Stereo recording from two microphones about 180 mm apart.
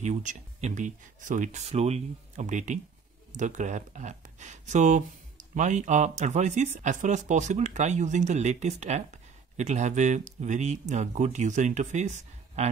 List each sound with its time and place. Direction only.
0.0 s speech: 40° right (ahead or behind)